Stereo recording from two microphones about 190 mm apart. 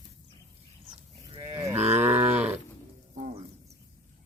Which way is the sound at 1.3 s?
25° right (ahead or behind).